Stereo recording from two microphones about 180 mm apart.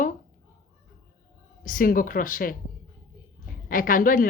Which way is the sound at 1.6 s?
50° left (ahead or behind).